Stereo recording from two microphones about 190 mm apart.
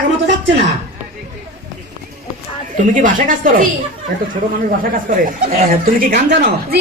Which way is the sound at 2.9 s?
45° right (ahead or behind).